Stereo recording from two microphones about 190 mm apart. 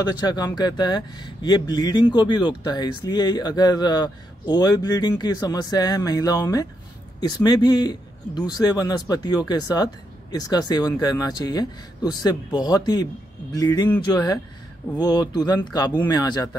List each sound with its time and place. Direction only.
0.0 s speech: 20° left (ahead or behind)